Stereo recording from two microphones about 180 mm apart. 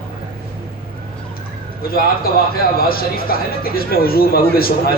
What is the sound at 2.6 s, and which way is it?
Speech, 55° left (ahead or behind).